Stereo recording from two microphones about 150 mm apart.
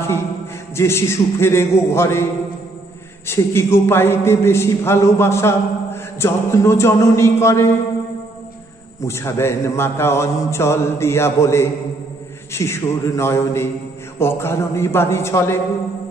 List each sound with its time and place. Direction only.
0.7 s a man's voice: 15° left (ahead or behind)
3.3 s a man's voice: 15° left (ahead or behind)
9.0 s a man's voice: 20° left (ahead or behind)